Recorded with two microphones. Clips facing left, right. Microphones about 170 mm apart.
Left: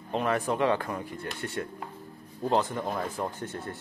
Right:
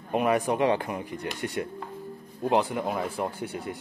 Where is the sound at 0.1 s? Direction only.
10° right (ahead or behind).